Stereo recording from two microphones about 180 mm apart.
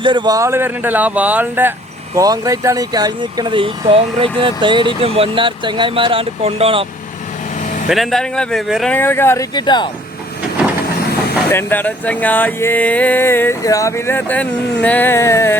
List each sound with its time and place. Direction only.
0.0 s speech: 25° right (ahead or behind)
7.6 s vehicle: 45° left (ahead or behind)
7.9 s speech: centre (ahead or behind)
9.0 s speech: 10° left (ahead or behind)
11.5 s speech: 10° left (ahead or behind)